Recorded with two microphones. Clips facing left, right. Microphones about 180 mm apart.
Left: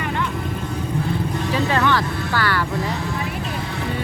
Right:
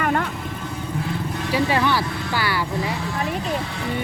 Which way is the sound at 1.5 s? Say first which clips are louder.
Even; 10° right (ahead or behind).